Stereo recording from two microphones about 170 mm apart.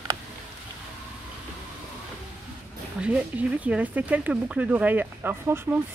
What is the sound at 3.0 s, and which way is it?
A woman's voice, 5° right (ahead or behind).